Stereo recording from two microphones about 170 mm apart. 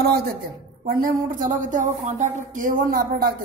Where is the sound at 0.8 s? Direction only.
55° right (ahead or behind).